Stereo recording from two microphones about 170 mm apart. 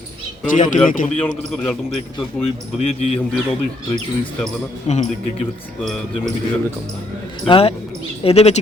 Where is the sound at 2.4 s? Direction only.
35° left (ahead or behind).